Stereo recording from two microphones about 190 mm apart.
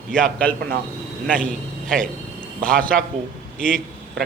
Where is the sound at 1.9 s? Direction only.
5° left (ahead or behind).